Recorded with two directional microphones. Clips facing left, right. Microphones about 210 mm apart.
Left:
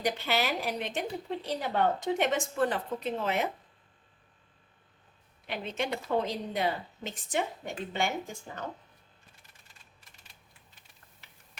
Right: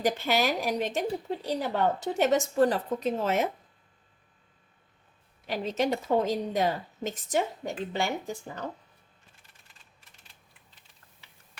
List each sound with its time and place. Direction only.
0.0 s a woman's voice: 45° right (ahead or behind)
5.5 s a woman's voice: 40° right (ahead or behind)